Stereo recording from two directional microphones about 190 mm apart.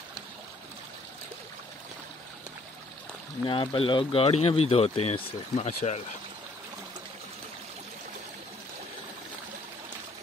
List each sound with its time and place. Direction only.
3.4 s speech: 25° left (ahead or behind)